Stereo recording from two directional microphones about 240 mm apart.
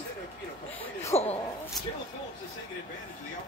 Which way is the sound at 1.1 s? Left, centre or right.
Left.